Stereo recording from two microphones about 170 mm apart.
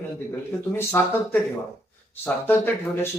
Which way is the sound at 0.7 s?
10° left (ahead or behind).